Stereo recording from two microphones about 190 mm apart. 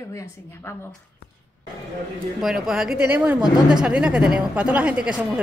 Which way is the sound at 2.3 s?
Centre (ahead or behind).